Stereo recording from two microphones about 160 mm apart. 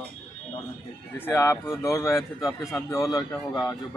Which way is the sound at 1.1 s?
15° left (ahead or behind).